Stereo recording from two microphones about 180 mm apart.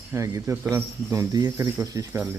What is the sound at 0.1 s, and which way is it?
Speech, 15° right (ahead or behind).